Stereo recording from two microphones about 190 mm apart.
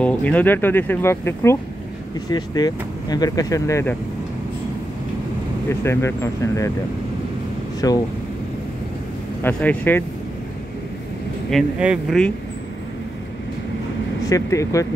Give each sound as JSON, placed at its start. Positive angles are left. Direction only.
{"t": 0.0, "sound": "speech", "side_deg": 5}
{"t": 5.7, "sound": "speech", "side_deg": 15}
{"t": 7.8, "sound": "speech", "side_deg": 20}
{"t": 9.4, "sound": "speech", "side_deg": 10}
{"t": 11.5, "sound": "speech", "side_deg": 0}
{"t": 14.2, "sound": "speech", "side_deg": 15}